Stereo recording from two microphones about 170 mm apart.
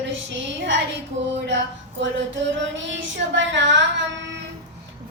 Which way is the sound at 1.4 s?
90° right.